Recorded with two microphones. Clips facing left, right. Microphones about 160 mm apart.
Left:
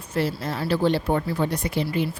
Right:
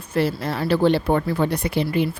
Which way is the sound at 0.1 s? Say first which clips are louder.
Right 3 dB; 65° right (ahead or behind).